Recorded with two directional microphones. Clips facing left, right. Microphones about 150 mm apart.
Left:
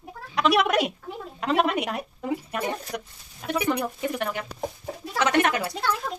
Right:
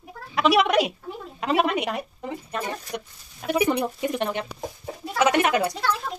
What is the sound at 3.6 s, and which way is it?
Speech, 25° right (ahead or behind).